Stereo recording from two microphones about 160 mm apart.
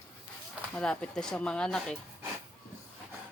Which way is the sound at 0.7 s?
5° left (ahead or behind).